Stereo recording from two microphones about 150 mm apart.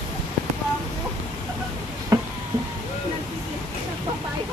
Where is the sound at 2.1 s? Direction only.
25° right (ahead or behind).